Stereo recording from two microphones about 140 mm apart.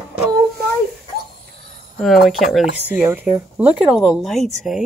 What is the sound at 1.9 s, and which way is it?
Speech, centre (ahead or behind).